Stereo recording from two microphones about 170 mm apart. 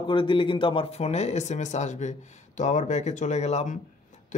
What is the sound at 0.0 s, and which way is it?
Speech, 30° left (ahead or behind).